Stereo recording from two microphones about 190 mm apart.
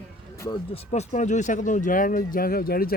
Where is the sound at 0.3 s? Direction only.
15° left (ahead or behind).